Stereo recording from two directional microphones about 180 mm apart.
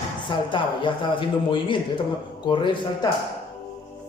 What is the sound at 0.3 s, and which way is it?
A man's voice, 25° left (ahead or behind).